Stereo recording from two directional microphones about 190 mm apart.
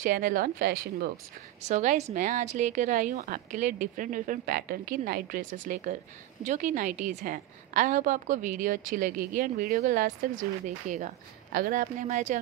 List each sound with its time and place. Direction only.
0.0 s a woman's voice: 45° right (ahead or behind)
1.6 s a woman's voice: 40° right (ahead or behind)